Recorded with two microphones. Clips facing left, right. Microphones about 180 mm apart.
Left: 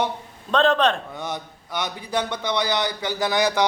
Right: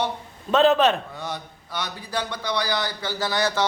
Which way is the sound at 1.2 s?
20° left (ahead or behind).